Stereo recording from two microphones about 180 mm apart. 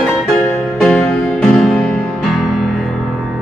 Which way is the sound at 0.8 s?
5° left (ahead or behind).